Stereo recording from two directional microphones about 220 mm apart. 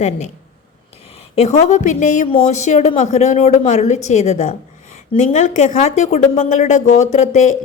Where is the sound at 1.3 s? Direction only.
30° left (ahead or behind).